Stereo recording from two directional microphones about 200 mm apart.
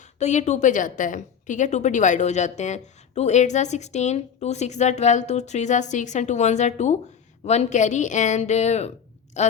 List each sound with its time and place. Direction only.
0.2 s a woman's voice: 35° left (ahead or behind)